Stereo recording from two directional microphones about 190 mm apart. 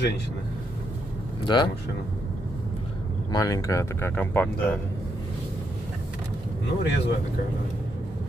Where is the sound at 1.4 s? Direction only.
25° left (ahead or behind).